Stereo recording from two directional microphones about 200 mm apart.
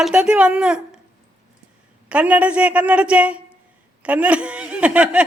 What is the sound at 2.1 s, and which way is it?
A man's voice, 5° right (ahead or behind).